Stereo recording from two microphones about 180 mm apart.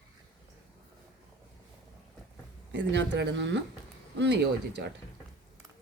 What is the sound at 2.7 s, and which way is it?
Speech, 75° right (ahead or behind).